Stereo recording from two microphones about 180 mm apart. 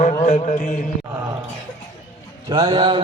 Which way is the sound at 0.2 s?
40° left (ahead or behind).